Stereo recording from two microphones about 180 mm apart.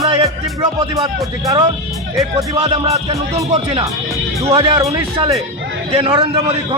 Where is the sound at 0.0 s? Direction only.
30° right (ahead or behind).